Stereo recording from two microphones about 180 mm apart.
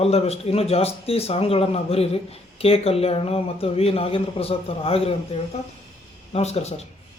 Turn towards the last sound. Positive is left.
turn(degrees=35)  # may be behind; listen again after turning